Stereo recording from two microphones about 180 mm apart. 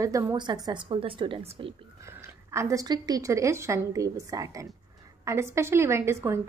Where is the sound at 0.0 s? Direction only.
20° right (ahead or behind).